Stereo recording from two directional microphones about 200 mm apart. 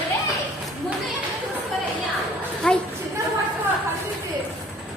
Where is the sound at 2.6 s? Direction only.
5° left (ahead or behind).